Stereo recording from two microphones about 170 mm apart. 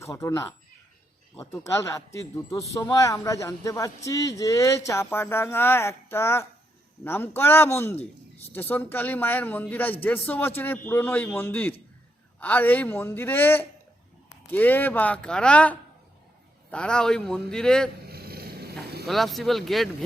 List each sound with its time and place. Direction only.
0.0 s a man's voice: 15° left (ahead or behind)
1.5 s a man's voice: 15° left (ahead or behind)
18.1 s vehicle: 65° right (ahead or behind)
19.0 s a man's voice: centre (ahead or behind)